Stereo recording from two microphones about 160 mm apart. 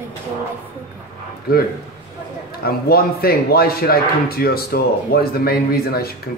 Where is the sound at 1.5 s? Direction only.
70° left (ahead or behind).